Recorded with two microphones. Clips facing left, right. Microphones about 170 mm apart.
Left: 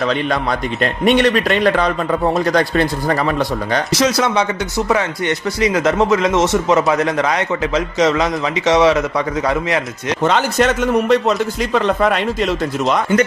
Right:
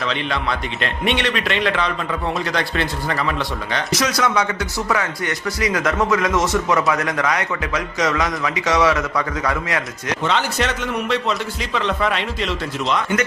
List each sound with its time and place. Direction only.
0.0 s a man's voice: 45° left (ahead or behind)
4.0 s a man's voice: 25° left (ahead or behind)
10.2 s a man's voice: 45° left (ahead or behind)